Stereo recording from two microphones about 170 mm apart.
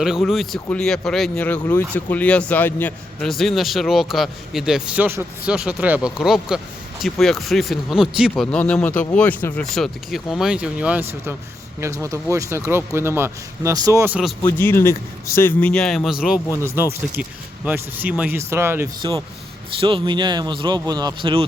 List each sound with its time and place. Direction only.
0.0 s speech: centre (ahead or behind)
8.4 s speech: 5° left (ahead or behind); by 14.2 s 15° right (ahead or behind)
14.4 s speech: 15° left (ahead or behind)
16.8 s speech: 10° right (ahead or behind)
19.8 s speech: 30° right (ahead or behind)